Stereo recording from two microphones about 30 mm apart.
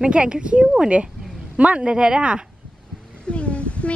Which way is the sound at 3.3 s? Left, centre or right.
Left.